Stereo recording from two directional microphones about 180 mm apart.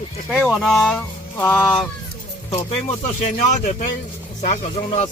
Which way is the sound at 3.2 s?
40° left (ahead or behind).